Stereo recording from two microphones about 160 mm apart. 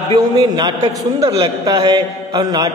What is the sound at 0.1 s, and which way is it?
A man's voice, 25° right (ahead or behind).